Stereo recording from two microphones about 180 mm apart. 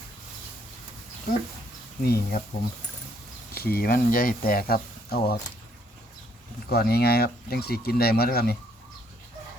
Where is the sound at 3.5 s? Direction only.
55° left (ahead or behind).